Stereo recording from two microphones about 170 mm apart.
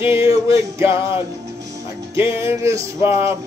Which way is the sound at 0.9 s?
30° left (ahead or behind).